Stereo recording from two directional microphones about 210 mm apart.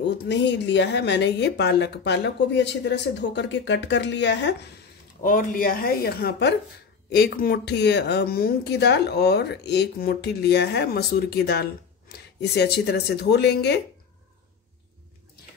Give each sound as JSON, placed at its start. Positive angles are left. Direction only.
{"t": 0.0, "sound": "speech", "side_deg": 55}
{"t": 5.2, "sound": "a woman's voice", "side_deg": 40}